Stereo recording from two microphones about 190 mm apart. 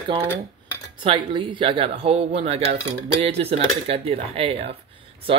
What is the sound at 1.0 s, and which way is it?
Speech, 25° right (ahead or behind).